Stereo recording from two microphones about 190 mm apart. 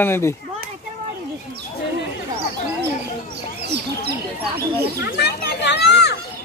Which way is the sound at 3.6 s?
60° right (ahead or behind).